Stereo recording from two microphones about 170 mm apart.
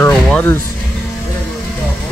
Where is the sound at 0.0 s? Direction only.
10° left (ahead or behind).